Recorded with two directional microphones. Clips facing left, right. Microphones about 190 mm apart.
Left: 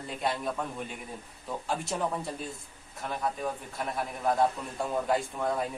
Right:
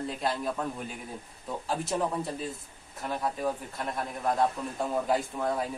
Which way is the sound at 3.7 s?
Centre (ahead or behind).